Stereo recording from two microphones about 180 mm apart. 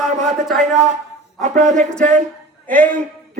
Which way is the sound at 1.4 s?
40° right (ahead or behind).